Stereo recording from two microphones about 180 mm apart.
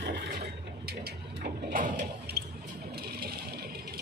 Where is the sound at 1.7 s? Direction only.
45° right (ahead or behind).